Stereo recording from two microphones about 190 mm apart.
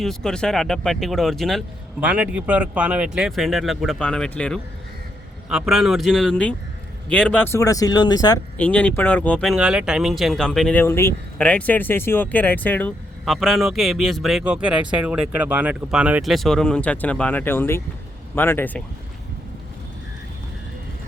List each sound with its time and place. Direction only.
0.0 s speech: centre (ahead or behind); by 8.4 s 20° left (ahead or behind)
8.5 s speech: 5° left (ahead or behind)